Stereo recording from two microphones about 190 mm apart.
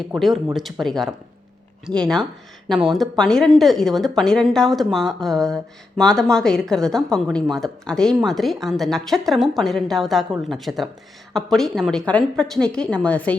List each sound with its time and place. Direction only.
0.0 s speech: centre (ahead or behind)